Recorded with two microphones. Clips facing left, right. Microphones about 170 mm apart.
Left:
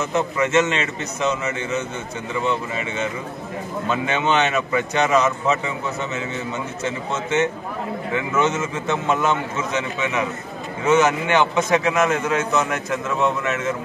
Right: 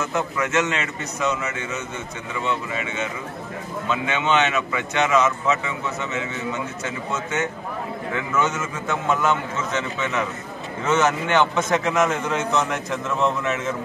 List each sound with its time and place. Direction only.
0.1 s a man's voice: 25° left (ahead or behind)
3.9 s a man's voice: 40° left (ahead or behind)
8.1 s a man's voice: 20° left (ahead or behind); by 13.6 s 5° left (ahead or behind)